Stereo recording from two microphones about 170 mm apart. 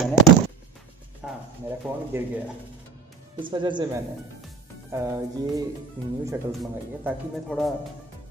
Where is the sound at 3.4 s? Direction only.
30° right (ahead or behind).